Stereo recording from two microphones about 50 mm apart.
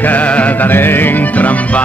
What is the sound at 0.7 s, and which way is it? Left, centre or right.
Music, left.